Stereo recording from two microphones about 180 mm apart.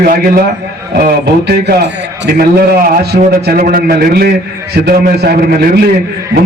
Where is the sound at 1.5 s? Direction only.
60° right (ahead or behind).